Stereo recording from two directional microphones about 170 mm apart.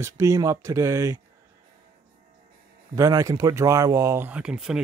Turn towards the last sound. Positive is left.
turn(degrees=-5)  # may be behind; listen again after turning